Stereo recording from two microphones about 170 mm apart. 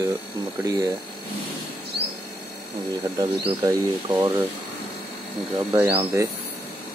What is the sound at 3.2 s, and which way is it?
Speech, 20° right (ahead or behind).